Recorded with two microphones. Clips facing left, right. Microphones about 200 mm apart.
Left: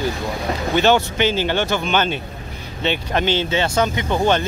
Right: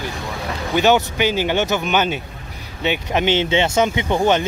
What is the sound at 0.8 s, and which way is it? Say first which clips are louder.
Speech: right 1 dB; 15° right (ahead or behind).